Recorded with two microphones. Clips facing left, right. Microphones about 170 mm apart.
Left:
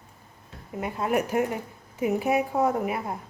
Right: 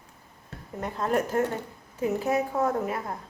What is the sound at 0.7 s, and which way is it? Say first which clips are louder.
A woman's voice: left 1 dB; 10° left (ahead or behind).